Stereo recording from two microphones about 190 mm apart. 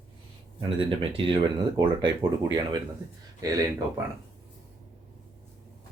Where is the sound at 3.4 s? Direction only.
20° right (ahead or behind).